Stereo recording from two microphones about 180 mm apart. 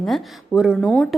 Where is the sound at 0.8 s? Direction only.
5° left (ahead or behind).